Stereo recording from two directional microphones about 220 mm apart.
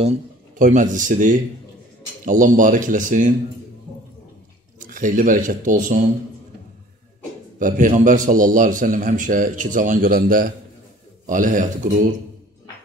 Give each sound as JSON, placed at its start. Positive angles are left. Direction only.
{"t": 0.0, "sound": "a man's voice", "side_deg": -30}
{"t": 4.8, "sound": "a man's voice", "side_deg": -35}
{"t": 7.5, "sound": "a man's voice", "side_deg": -35}